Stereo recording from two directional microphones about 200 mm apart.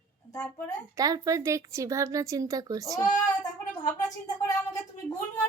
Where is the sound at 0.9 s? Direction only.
15° right (ahead or behind).